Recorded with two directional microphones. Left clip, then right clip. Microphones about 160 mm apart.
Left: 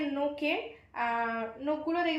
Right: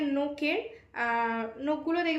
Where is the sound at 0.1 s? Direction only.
25° right (ahead or behind).